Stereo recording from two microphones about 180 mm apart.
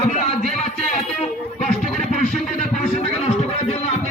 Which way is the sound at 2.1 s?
40° left (ahead or behind).